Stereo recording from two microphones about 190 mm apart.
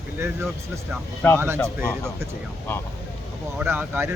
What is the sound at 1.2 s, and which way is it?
Speech, 10° left (ahead or behind).